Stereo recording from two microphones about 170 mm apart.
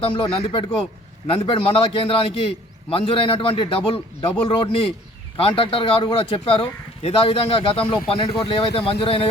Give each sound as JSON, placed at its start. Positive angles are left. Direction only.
{"t": 0.0, "sound": "speech", "side_deg": 30}